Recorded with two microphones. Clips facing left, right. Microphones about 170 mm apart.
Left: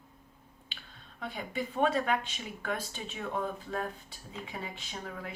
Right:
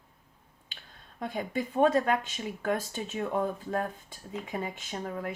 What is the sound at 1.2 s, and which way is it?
Speech, 45° right (ahead or behind).